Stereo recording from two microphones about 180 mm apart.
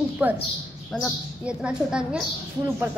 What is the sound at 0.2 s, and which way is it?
Speech, 10° right (ahead or behind).